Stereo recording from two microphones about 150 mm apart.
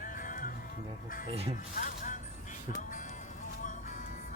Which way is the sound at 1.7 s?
60° left (ahead or behind).